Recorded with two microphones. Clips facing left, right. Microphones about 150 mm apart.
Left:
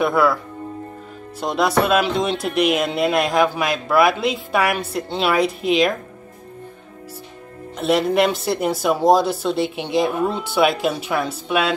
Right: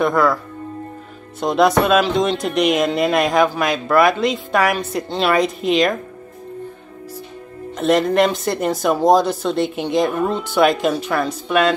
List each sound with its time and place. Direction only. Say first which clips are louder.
0.0 s speech: right 1 dB; 10° left (ahead or behind)
1.4 s speech: right 4 dB; centre (ahead or behind)
7.7 s speech: right 2 dB; 5° left (ahead or behind)